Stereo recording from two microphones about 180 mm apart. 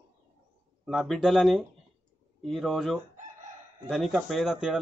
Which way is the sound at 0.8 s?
Centre (ahead or behind).